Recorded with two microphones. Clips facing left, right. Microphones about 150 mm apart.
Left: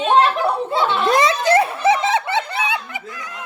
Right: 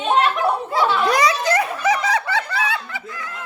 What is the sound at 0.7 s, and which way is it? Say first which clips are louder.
Speech: left 1 dB; 25° left (ahead or behind).